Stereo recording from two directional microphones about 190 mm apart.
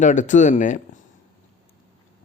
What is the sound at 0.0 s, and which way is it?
Speech, 40° left (ahead or behind).